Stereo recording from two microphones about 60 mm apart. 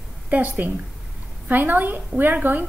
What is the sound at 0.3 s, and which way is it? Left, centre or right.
A woman's voice, right.